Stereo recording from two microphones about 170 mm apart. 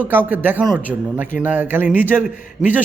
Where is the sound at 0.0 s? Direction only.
10° right (ahead or behind).